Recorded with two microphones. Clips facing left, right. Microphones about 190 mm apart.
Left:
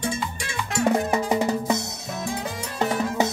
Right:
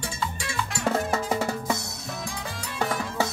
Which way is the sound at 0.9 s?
15° left (ahead or behind).